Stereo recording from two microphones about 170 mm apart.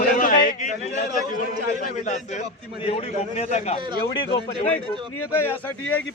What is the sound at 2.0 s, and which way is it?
A man's voice, 45° left (ahead or behind).